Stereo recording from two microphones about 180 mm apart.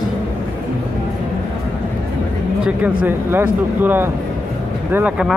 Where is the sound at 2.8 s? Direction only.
10° right (ahead or behind).